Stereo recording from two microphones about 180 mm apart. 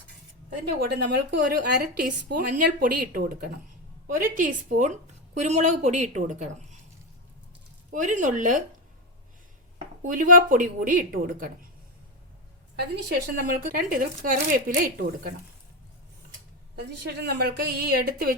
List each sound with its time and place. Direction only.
0.9 s a woman's voice: 65° right (ahead or behind); by 6.7 s 40° right (ahead or behind)
7.9 s speech: 45° right (ahead or behind)
10.0 s speech: 50° right (ahead or behind)
12.7 s a woman's voice: 65° right (ahead or behind)
13.7 s speech: 50° right (ahead or behind)
16.7 s speech: 65° right (ahead or behind)